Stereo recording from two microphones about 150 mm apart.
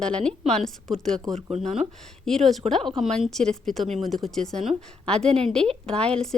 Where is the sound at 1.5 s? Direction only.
50° right (ahead or behind).